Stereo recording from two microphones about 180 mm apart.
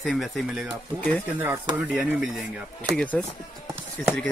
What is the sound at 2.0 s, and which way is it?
Speech, centre (ahead or behind).